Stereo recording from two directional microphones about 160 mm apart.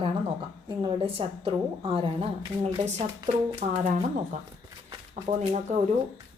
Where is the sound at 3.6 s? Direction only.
45° right (ahead or behind).